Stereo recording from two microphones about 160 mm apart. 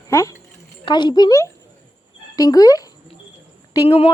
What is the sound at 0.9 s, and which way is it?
Speech, 30° left (ahead or behind).